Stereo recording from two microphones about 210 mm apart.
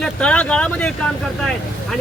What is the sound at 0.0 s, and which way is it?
A man's voice, 5° left (ahead or behind).